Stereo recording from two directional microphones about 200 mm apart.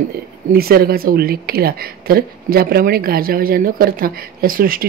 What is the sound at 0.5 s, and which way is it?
Speech, 50° right (ahead or behind).